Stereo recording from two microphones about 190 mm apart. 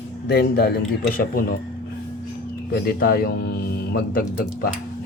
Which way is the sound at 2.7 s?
50° left (ahead or behind).